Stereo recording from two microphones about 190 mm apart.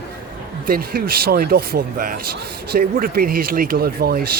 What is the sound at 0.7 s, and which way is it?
Speech, 55° right (ahead or behind).